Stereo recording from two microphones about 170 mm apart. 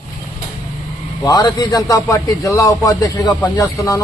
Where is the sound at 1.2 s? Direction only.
25° left (ahead or behind).